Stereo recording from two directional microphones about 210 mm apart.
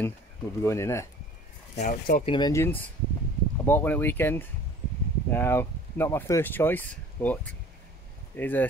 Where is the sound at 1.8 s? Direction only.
40° left (ahead or behind).